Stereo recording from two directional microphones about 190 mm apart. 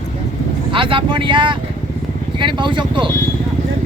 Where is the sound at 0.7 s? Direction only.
25° right (ahead or behind).